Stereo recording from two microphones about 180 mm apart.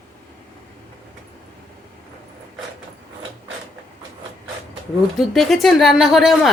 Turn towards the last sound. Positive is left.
turn(degrees=0)  # may be behind; listen again after turning